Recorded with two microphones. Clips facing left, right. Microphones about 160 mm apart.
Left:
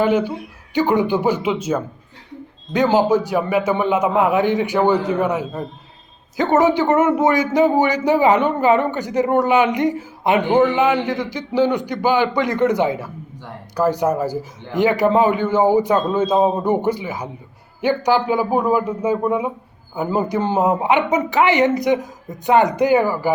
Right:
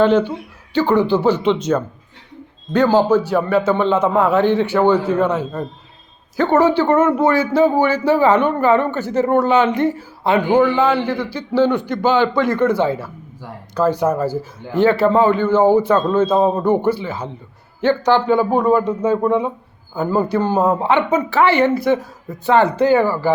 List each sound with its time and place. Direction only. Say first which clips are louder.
0.0 s a man's voice: right 3 dB; 10° left (ahead or behind)